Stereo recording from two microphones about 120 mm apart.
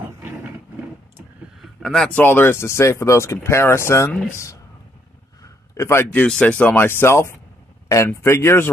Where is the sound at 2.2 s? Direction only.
15° left (ahead or behind).